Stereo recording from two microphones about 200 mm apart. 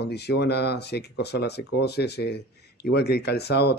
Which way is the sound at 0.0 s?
55° left (ahead or behind).